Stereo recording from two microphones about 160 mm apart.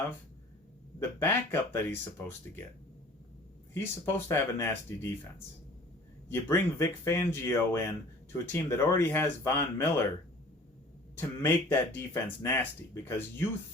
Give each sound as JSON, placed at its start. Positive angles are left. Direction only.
{"t": 0.9, "sound": "speech", "side_deg": 15}
{"t": 4.0, "sound": "speech", "side_deg": 15}
{"t": 6.3, "sound": "speech", "side_deg": 15}
{"t": 11.2, "sound": "speech", "side_deg": 15}